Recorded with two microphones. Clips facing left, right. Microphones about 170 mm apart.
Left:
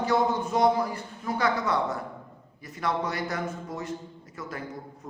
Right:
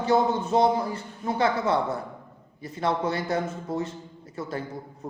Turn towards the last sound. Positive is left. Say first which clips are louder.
# right 5 dB
turn(degrees=-30)  # may be behind; listen again after turning